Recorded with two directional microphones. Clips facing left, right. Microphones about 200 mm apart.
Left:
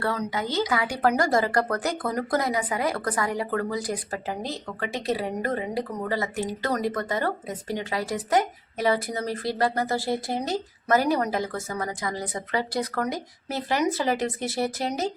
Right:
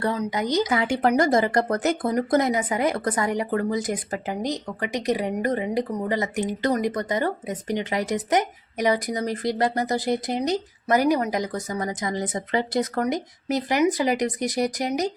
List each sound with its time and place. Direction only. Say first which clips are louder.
0.0 s speech: right 3 dB; 15° right (ahead or behind)